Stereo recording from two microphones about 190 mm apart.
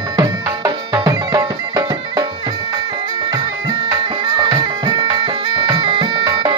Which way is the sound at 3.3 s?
20° right (ahead or behind).